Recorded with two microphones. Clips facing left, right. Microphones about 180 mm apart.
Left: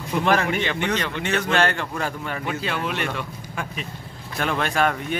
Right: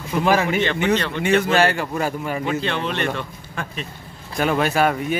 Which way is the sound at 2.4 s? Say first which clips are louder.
Right 2 dB; 5° left (ahead or behind).